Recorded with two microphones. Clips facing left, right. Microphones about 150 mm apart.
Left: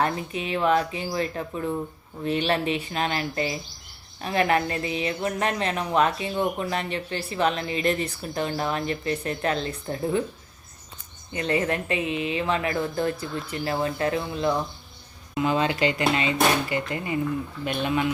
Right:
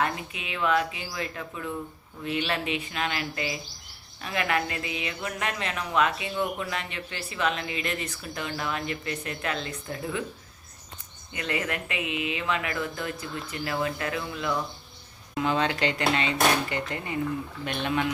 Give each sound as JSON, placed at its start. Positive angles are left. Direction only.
{"t": 0.0, "sound": "a woman's voice", "side_deg": 35}
{"t": 11.3, "sound": "a woman's voice", "side_deg": 30}
{"t": 15.4, "sound": "speech", "side_deg": 10}